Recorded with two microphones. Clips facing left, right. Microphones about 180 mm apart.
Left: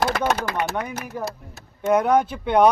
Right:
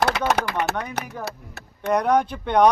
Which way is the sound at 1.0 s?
65° right (ahead or behind).